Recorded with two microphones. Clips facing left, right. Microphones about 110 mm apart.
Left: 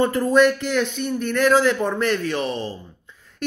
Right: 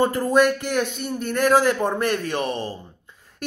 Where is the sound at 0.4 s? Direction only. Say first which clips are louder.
Left 1 dB; 50° right (ahead or behind).